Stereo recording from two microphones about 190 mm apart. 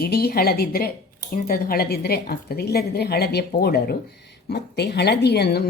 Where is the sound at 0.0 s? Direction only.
55° left (ahead or behind).